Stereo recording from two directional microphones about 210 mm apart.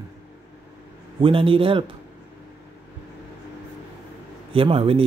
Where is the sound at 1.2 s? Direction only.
25° right (ahead or behind).